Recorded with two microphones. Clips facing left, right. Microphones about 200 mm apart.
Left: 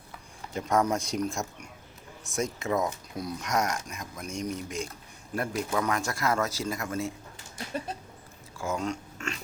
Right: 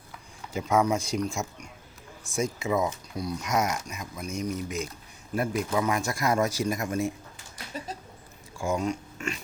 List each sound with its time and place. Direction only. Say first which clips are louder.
0.5 s speech: right 2 dB; 5° right (ahead or behind)
8.5 s speech: right 3 dB; 15° right (ahead or behind)